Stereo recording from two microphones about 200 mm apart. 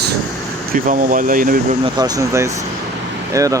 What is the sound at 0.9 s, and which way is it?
Speech, 40° right (ahead or behind).